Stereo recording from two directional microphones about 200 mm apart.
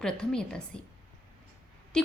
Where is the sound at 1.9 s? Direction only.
5° left (ahead or behind).